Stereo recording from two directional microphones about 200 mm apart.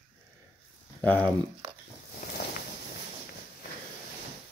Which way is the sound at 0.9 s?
10° left (ahead or behind).